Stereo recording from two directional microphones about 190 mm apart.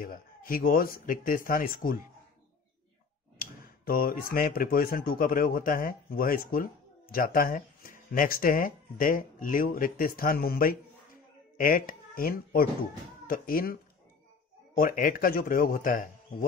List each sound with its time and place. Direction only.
0.0 s speech: 50° left (ahead or behind)
3.3 s speech: 50° left (ahead or behind)
14.8 s speech: 45° left (ahead or behind)